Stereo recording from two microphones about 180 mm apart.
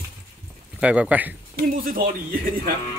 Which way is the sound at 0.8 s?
5° right (ahead or behind).